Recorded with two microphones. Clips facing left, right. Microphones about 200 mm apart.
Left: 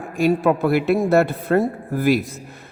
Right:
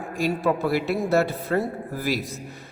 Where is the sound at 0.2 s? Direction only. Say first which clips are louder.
Left 6 dB; 55° left (ahead or behind).